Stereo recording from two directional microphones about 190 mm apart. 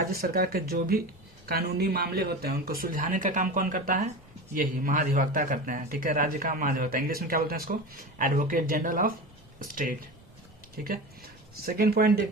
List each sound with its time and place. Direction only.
0.1 s speech: 55° right (ahead or behind)